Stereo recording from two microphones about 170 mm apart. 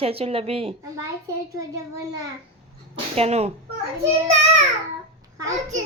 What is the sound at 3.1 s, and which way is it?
Speech, 35° right (ahead or behind).